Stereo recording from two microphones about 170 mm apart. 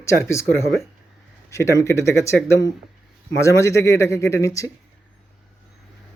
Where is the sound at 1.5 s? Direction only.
15° left (ahead or behind).